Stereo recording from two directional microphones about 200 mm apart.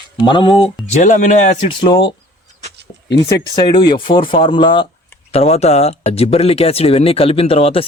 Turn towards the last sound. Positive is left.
turn(degrees=30)  # may be behind; listen again after turning